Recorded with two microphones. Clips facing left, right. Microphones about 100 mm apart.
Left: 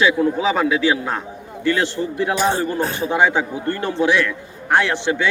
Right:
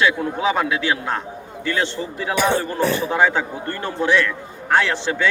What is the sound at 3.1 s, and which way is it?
Speech, 15° left (ahead or behind).